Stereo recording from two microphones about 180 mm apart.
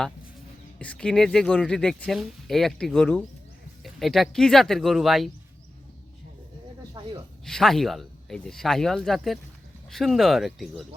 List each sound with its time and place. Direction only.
0.8 s speech: 5° left (ahead or behind)
7.0 s a sound: 25° right (ahead or behind)
7.4 s speech: centre (ahead or behind)